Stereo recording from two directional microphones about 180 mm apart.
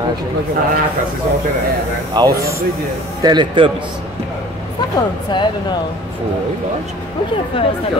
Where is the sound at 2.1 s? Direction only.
25° right (ahead or behind).